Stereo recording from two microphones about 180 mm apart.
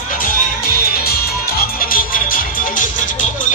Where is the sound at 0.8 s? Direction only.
60° left (ahead or behind).